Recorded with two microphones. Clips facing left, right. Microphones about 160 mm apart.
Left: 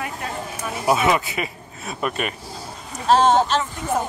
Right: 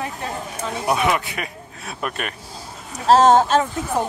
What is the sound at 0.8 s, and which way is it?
Speech, centre (ahead or behind).